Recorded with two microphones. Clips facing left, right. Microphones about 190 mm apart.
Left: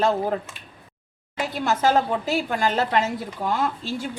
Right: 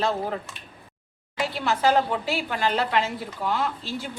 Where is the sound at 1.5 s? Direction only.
45° left (ahead or behind).